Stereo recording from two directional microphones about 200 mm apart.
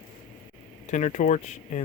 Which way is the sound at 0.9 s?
35° left (ahead or behind).